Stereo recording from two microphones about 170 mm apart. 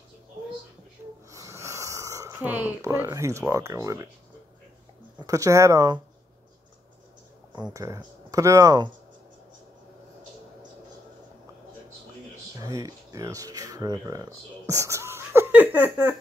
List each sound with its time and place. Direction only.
1.3 s speech: 15° right (ahead or behind)
5.2 s speech: 20° right (ahead or behind)
7.7 s speech: 20° right (ahead or behind)
12.5 s speech: 20° right (ahead or behind)